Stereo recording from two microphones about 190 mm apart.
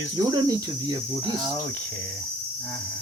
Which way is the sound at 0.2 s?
20° right (ahead or behind).